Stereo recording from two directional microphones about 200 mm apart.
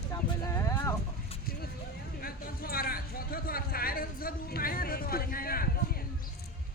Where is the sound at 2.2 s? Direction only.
45° left (ahead or behind).